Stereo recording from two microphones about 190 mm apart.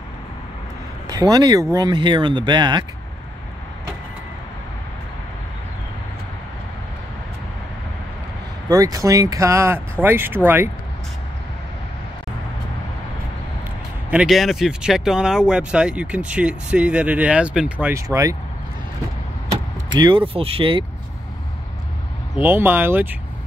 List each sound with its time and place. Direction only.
1.0 s speech: 20° right (ahead or behind)
8.6 s speech: 20° right (ahead or behind)
14.1 s speech: centre (ahead or behind)
20.0 s speech: 25° right (ahead or behind)
22.3 s speech: 10° right (ahead or behind)